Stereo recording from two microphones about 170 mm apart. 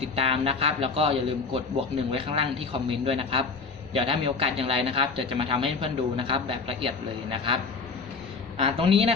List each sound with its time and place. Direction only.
0.2 s a man's voice: 35° right (ahead or behind)